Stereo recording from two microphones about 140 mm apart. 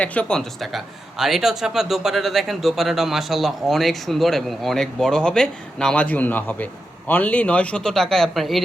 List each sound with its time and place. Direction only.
0.0 s speech: 10° left (ahead or behind)